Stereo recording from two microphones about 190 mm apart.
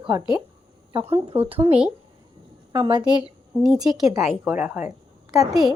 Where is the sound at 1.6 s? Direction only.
5° right (ahead or behind).